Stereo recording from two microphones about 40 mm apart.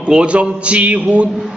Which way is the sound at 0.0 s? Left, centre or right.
Right.